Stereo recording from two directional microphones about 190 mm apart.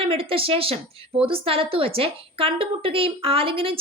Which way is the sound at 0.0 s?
30° right (ahead or behind).